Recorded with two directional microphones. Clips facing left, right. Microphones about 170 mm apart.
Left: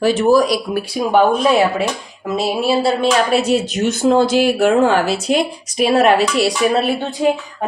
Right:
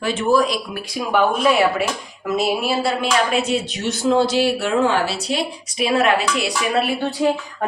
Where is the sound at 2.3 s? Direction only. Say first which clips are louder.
Left 3 dB; 30° left (ahead or behind).